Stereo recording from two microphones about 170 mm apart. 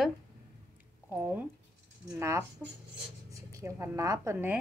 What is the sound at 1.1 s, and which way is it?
Speech, 10° right (ahead or behind).